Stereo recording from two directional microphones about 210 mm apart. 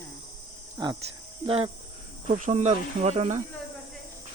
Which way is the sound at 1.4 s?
30° right (ahead or behind).